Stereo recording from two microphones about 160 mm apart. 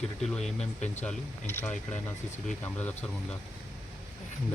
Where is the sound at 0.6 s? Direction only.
45° left (ahead or behind).